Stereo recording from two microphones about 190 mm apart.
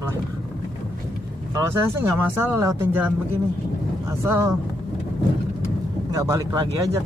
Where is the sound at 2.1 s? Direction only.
10° right (ahead or behind).